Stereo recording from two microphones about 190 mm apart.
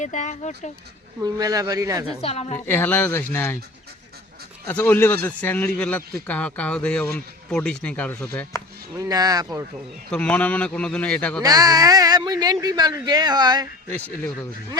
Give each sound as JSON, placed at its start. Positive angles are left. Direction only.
{"t": 0.0, "sound": "speech", "side_deg": 40}
{"t": 1.2, "sound": "speech", "side_deg": -20}
{"t": 2.2, "sound": "speech", "side_deg": 35}
{"t": 2.6, "sound": "speech", "side_deg": 10}
{"t": 4.6, "sound": "speech", "side_deg": 10}
{"t": 8.5, "sound": "a sound", "side_deg": 15}
{"t": 9.0, "sound": "speech", "side_deg": -20}
{"t": 10.1, "sound": "speech", "side_deg": 5}
{"t": 11.4, "sound": "speech", "side_deg": -20}